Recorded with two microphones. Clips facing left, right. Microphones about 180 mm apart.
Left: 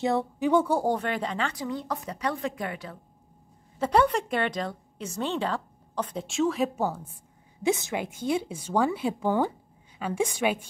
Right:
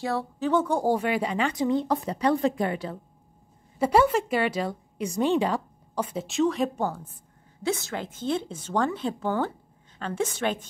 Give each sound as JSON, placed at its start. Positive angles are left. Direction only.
{"t": 0.0, "sound": "a woman's voice", "side_deg": 20}
{"t": 0.8, "sound": "speech", "side_deg": -10}
{"t": 3.8, "sound": "a woman's voice", "side_deg": -5}